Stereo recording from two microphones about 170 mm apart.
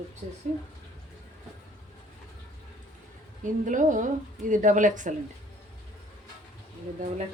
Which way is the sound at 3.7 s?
50° right (ahead or behind).